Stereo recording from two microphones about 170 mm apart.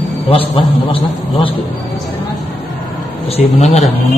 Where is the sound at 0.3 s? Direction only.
30° left (ahead or behind).